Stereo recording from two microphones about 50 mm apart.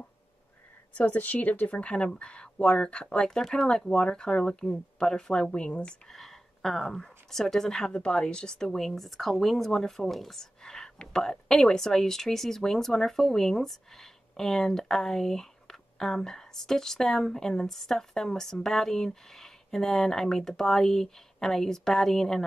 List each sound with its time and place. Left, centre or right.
0.9 s speech: left
6.1 s a woman's voice: centre
7.9 s speech: left